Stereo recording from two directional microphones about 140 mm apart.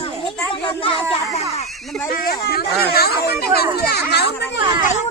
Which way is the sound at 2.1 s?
90° left.